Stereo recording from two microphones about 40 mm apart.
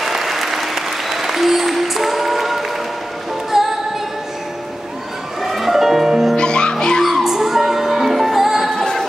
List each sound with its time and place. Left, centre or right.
0.0 s applause: centre
3.5 s music: centre
5.4 s music: centre
6.3 s music: left
7.0 s music: centre
7.3 s music: centre
8.7 s music: centre